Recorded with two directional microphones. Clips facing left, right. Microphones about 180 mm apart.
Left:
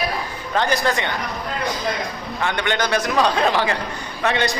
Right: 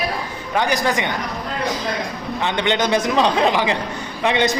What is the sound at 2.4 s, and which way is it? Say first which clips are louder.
A man's voice: right 2 dB; 20° right (ahead or behind).